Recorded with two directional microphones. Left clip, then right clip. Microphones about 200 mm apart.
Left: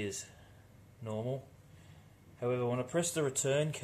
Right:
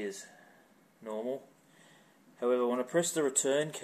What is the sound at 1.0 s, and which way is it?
Speech, 15° right (ahead or behind).